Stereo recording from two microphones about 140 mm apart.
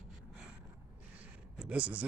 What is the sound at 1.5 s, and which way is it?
Speech, 10° right (ahead or behind).